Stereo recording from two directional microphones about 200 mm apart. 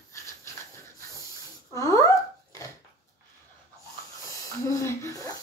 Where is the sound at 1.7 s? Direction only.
15° left (ahead or behind).